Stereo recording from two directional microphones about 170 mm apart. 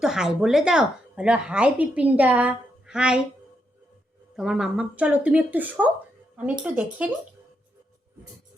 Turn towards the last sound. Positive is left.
turn(degrees=-5)  # may be behind; listen again after turning